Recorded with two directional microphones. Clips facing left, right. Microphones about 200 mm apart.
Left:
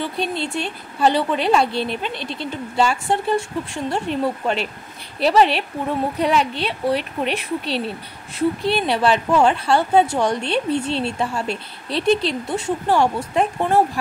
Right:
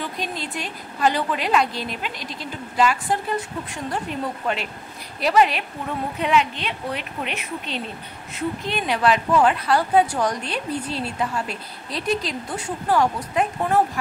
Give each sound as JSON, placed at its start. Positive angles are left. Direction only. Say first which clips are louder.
{"t": 0.0, "sound": "a woman's voice", "louder": "left 5 dB", "side_deg": 30}